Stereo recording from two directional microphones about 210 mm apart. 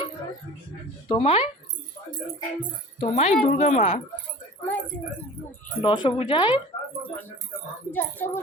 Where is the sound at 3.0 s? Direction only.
30° left (ahead or behind).